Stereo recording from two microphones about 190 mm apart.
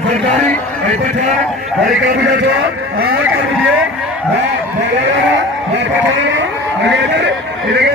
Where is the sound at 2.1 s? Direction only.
65° right (ahead or behind).